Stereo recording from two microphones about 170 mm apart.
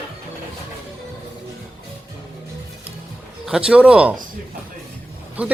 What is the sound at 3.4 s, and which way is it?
Speech, 5° right (ahead or behind).